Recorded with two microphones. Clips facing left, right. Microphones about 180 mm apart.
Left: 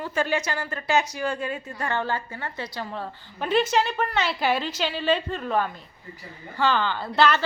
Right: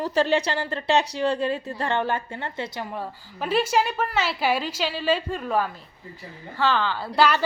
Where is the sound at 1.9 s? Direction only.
20° right (ahead or behind).